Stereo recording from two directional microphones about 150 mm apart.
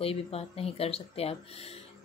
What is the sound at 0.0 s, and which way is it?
A woman's voice, 40° left (ahead or behind).